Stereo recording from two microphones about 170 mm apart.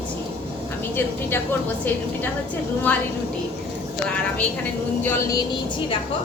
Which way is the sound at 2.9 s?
10° left (ahead or behind).